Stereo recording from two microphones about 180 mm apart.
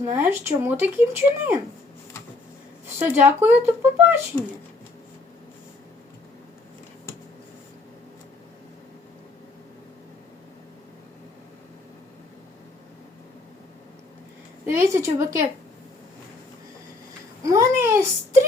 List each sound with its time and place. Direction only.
0.1 s speech: 15° right (ahead or behind)
3.0 s speech: 10° right (ahead or behind)
14.7 s speech: 15° right (ahead or behind)
17.4 s speech: 15° right (ahead or behind)